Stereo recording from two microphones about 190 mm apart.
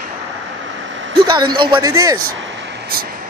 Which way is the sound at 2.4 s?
70° right (ahead or behind).